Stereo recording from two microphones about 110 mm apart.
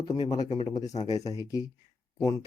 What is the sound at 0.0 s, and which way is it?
Speech, 40° left (ahead or behind).